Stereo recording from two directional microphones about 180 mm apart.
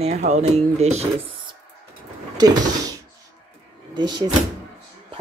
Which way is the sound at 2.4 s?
20° right (ahead or behind).